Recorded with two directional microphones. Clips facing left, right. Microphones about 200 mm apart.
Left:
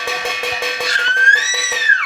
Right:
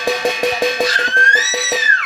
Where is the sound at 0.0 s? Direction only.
35° right (ahead or behind).